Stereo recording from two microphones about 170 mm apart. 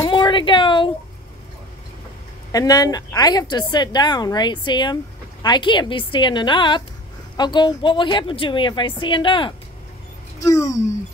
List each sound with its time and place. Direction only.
0.0 s speech: 25° left (ahead or behind)
2.5 s a woman's voice: 20° left (ahead or behind)
10.4 s a woman's voice: 20° left (ahead or behind)